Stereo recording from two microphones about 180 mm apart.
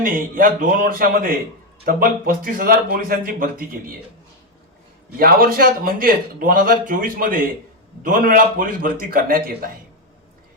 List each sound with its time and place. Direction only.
0.0 s a man's voice: 50° right (ahead or behind)
5.1 s a man's voice: 55° right (ahead or behind)